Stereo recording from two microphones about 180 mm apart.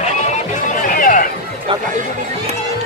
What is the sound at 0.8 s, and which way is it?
Chatter, 50° left (ahead or behind).